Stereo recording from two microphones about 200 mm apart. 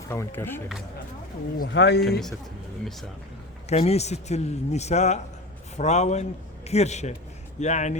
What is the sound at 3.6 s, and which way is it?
Speech, 30° left (ahead or behind).